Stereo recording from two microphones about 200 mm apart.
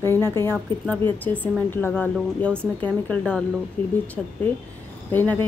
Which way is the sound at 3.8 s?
25° right (ahead or behind).